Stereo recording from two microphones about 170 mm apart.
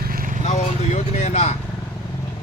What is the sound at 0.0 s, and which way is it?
Vehicle, 55° right (ahead or behind).